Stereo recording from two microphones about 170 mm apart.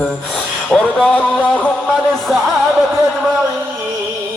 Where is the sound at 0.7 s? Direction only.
5° left (ahead or behind).